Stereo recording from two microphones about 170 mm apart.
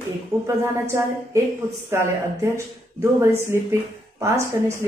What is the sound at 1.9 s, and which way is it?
Speech, 15° right (ahead or behind).